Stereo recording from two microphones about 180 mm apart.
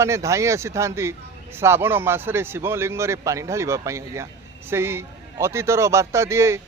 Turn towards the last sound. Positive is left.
turn(degrees=-15)  # may be behind; listen again after turning